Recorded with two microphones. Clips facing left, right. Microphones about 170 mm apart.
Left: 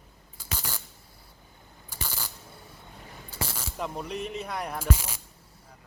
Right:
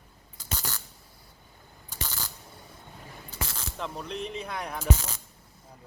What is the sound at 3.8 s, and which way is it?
Speech, 10° left (ahead or behind).